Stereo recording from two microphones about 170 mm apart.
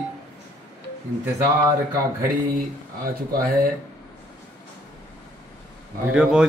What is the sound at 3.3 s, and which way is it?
Speech, 60° right (ahead or behind).